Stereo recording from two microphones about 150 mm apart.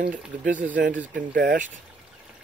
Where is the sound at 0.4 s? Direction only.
60° right (ahead or behind).